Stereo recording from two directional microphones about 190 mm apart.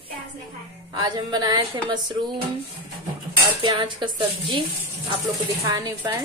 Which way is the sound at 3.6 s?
25° right (ahead or behind).